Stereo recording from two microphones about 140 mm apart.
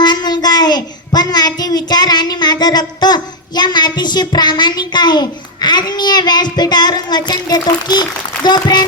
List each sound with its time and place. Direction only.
0.0 s a child's voice: 30° left (ahead or behind)